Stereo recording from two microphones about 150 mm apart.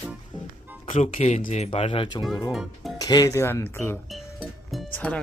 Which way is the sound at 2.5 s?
Centre (ahead or behind).